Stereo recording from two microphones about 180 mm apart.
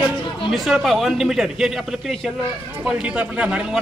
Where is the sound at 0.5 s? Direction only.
Centre (ahead or behind).